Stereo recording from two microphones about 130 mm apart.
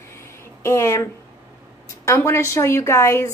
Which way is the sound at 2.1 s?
20° left (ahead or behind).